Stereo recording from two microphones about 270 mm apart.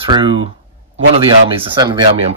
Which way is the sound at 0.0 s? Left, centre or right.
Centre.